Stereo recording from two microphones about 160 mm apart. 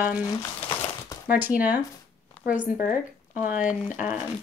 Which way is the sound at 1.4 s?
10° right (ahead or behind).